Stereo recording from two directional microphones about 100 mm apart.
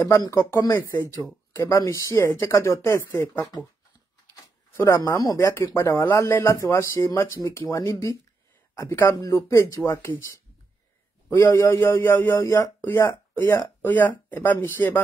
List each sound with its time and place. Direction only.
0.0 s speech: 35° left (ahead or behind)
0.7 s speech: 25° left (ahead or behind)
4.7 s speech: 25° left (ahead or behind)
11.2 s speech: 25° left (ahead or behind)
12.4 s speech: 30° left (ahead or behind)